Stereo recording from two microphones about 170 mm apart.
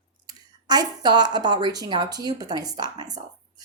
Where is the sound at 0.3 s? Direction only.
25° right (ahead or behind).